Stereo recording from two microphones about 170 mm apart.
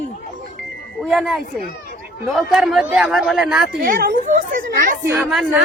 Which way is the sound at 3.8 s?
60° right (ahead or behind).